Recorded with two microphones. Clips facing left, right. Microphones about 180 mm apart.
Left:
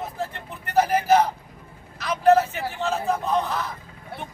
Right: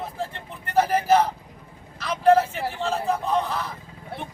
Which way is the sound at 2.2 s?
5° left (ahead or behind).